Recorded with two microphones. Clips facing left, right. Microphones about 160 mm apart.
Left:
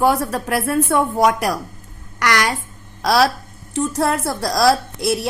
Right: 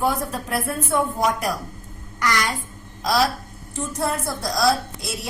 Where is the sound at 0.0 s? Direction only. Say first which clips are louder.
Left 6 dB; 75° left (ahead or behind).